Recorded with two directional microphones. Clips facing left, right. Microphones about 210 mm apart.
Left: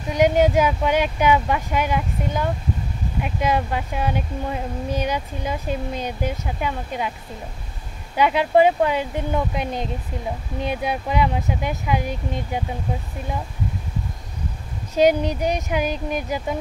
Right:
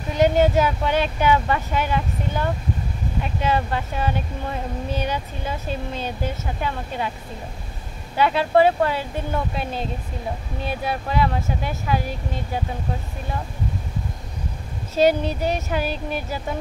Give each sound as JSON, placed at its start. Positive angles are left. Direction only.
{"t": 0.1, "sound": "speech", "side_deg": 10}
{"t": 8.2, "sound": "speech", "side_deg": 15}
{"t": 15.0, "sound": "speech", "side_deg": 15}